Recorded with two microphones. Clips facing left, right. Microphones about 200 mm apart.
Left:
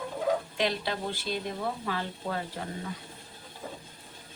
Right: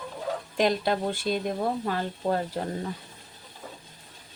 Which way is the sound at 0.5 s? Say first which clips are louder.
Right 6 dB; 45° right (ahead or behind).